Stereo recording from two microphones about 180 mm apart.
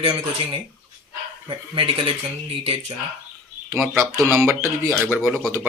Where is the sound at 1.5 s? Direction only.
30° right (ahead or behind).